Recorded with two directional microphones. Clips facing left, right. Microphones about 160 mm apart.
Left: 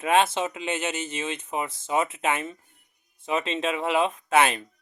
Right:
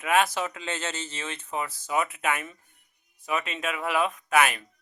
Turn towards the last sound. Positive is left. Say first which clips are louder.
# left 2 dB
turn(degrees=30)  # may be behind; listen again after turning